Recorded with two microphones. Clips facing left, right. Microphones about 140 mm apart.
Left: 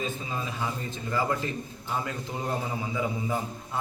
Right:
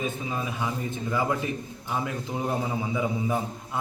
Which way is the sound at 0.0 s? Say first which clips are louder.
Right 2 dB; 15° right (ahead or behind).